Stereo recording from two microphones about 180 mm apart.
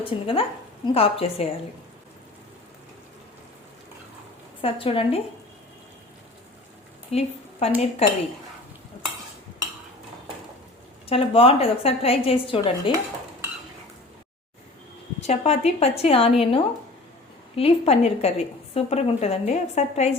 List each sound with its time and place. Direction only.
0.0 s a woman's voice: 30° left (ahead or behind)
4.6 s a woman's voice: 30° left (ahead or behind)
7.1 s a woman's voice: 35° left (ahead or behind)
11.1 s a woman's voice: 30° left (ahead or behind)
15.3 s a woman's voice: 35° left (ahead or behind)